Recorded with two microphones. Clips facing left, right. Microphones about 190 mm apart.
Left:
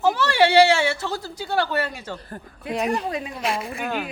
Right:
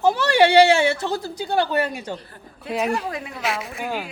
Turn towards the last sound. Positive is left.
turn(degrees=-15)  # may be behind; listen again after turning